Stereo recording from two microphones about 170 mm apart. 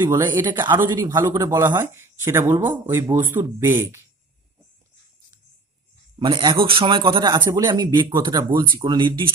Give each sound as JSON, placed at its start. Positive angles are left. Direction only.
{"t": 0.0, "sound": "a man's voice", "side_deg": -25}
{"t": 0.7, "sound": "speech", "side_deg": -10}
{"t": 6.1, "sound": "a man's voice", "side_deg": -30}